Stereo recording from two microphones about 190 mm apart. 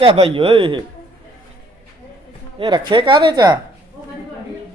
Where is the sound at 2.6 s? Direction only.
25° right (ahead or behind).